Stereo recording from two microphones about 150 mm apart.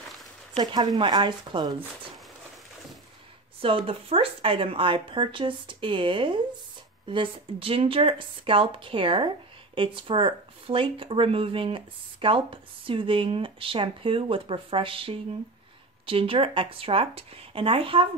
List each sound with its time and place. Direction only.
0.6 s speech: 30° right (ahead or behind)
3.6 s speech: 40° right (ahead or behind)